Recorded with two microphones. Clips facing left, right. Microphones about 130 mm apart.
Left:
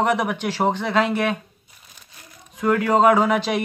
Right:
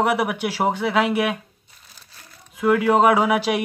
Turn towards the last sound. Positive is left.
turn(degrees=-10)  # may be behind; listen again after turning